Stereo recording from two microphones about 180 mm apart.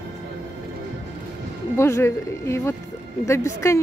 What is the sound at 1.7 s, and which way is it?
Speech, 15° left (ahead or behind).